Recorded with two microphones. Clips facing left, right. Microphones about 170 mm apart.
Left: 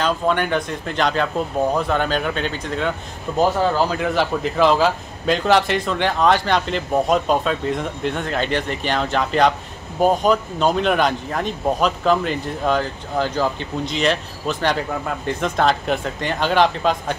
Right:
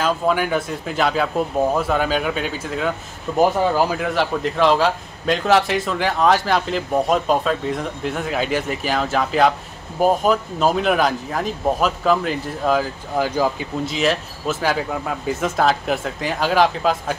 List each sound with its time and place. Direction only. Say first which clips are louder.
0.0 s speech: even; 5° right (ahead or behind)
4.0 s speech: left 1 dB; centre (ahead or behind)